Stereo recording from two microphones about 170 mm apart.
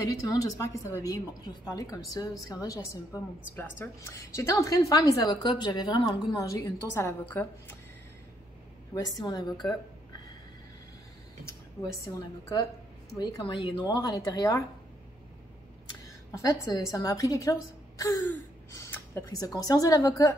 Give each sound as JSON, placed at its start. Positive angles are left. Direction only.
{"t": 0.0, "sound": "a woman's voice", "side_deg": 20}
{"t": 6.3, "sound": "a woman's voice", "side_deg": 15}
{"t": 8.9, "sound": "a woman's voice", "side_deg": 25}
{"t": 11.4, "sound": "a sound", "side_deg": 20}
{"t": 12.2, "sound": "a woman's voice", "side_deg": 20}
{"t": 16.3, "sound": "a woman's voice", "side_deg": 20}